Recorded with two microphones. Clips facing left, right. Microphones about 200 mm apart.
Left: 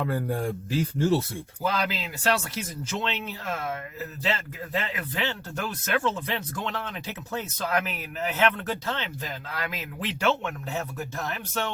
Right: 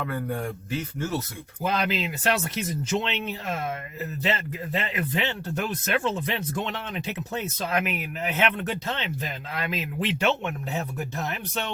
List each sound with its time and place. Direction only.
0.0 s speech: 30° left (ahead or behind)
1.6 s speech: 20° right (ahead or behind)
4.2 s speech: 20° right (ahead or behind)